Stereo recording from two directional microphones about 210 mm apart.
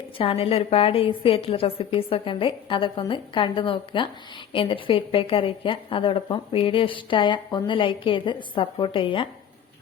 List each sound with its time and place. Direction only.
0.2 s a woman's voice: 25° left (ahead or behind)